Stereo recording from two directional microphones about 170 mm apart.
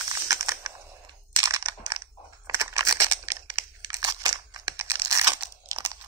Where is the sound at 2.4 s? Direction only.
15° right (ahead or behind).